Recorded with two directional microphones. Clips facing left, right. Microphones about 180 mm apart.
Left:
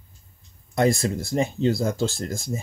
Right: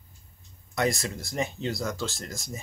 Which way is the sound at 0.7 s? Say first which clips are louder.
Left 6 dB; 30° left (ahead or behind).